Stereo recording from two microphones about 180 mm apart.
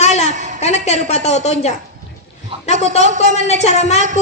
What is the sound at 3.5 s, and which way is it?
Speech, 35° left (ahead or behind).